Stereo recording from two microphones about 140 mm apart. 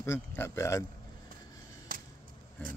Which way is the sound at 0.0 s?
20° left (ahead or behind).